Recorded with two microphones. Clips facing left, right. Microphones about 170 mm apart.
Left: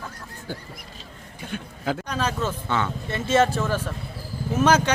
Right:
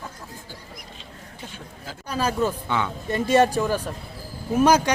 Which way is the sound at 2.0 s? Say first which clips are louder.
Right 8 dB; 10° right (ahead or behind).